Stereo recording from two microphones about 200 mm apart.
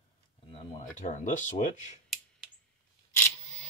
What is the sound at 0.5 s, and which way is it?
Speech, 35° left (ahead or behind).